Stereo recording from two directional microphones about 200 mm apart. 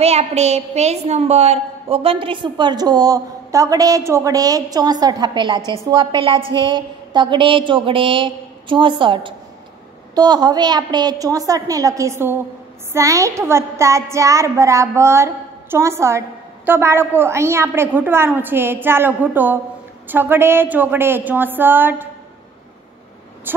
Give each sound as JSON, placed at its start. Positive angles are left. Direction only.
{"t": 0.0, "sound": "a woman's voice", "side_deg": -30}